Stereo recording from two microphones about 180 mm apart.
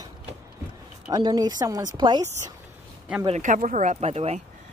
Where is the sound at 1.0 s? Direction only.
20° right (ahead or behind).